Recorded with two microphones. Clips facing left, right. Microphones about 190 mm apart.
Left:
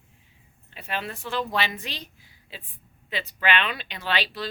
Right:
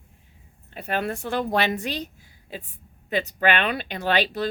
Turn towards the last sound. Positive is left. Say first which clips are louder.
# right 6 dB
turn(degrees=-45)  # may be behind; listen again after turning